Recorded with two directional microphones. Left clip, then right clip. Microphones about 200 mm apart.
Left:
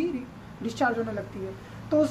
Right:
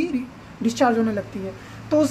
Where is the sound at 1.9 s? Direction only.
50° right (ahead or behind).